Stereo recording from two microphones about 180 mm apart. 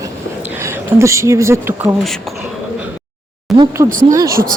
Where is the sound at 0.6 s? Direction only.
15° right (ahead or behind).